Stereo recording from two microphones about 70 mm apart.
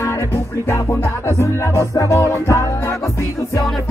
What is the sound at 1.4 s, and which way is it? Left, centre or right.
Music, left.